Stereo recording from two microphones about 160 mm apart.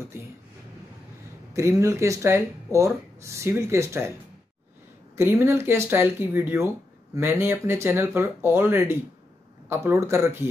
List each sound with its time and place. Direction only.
1.5 s speech: 20° right (ahead or behind)
5.1 s speech: 15° right (ahead or behind)